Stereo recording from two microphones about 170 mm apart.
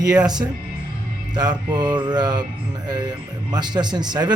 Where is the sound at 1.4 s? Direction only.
25° right (ahead or behind).